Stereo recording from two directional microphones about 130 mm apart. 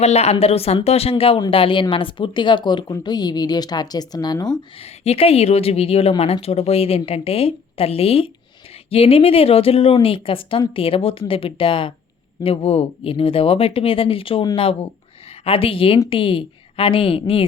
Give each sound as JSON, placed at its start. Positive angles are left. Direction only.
{"t": 0.0, "sound": "a woman's voice", "side_deg": 55}
{"t": 4.8, "sound": "a woman's voice", "side_deg": 50}